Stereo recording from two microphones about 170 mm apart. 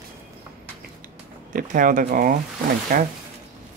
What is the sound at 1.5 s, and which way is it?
Speech, 50° right (ahead or behind).